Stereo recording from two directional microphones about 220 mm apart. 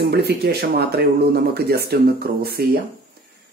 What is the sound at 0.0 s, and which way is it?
Speech, 45° right (ahead or behind).